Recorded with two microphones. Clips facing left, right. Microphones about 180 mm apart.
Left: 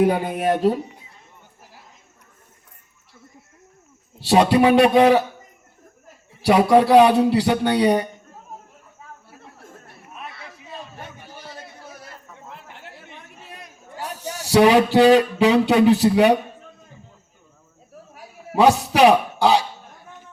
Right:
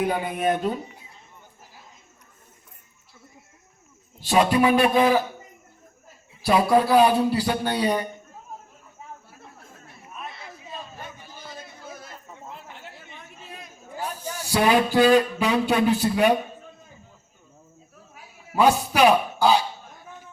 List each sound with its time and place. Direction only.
0.0 s speech: 40° left (ahead or behind)
4.4 s speech: 75° left (ahead or behind)
6.4 s speech: 70° left (ahead or behind)
14.2 s speech: 75° left (ahead or behind)
18.5 s a man's voice: 70° left (ahead or behind)